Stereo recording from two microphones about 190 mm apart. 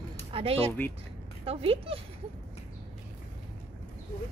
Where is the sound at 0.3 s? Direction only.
30° right (ahead or behind).